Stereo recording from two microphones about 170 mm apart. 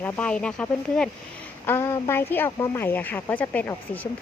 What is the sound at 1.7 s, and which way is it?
Speech, 15° left (ahead or behind).